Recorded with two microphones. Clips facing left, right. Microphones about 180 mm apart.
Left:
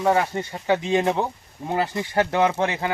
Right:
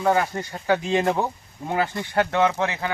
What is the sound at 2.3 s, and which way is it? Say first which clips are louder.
Speech: left 1 dB; 25° left (ahead or behind).